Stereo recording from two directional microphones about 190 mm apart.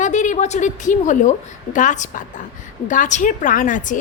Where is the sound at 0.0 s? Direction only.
40° left (ahead or behind).